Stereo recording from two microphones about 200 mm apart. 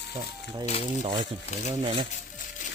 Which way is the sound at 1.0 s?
20° right (ahead or behind).